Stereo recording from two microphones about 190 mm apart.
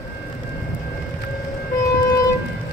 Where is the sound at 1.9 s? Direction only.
20° left (ahead or behind).